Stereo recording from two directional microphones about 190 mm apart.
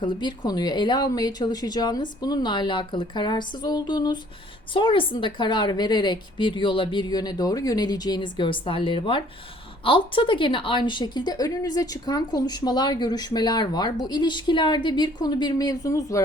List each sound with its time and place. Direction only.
0.0 s a woman's voice: 25° left (ahead or behind)